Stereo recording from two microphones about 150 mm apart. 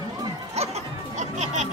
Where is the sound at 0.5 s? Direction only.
50° right (ahead or behind).